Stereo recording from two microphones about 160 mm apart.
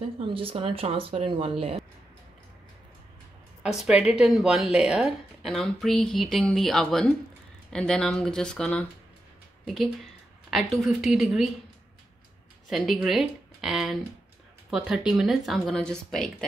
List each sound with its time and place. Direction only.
0.3 s speech: 35° right (ahead or behind)
3.6 s a woman's voice: 5° right (ahead or behind)
10.5 s a woman's voice: centre (ahead or behind)
12.6 s a woman's voice: centre (ahead or behind)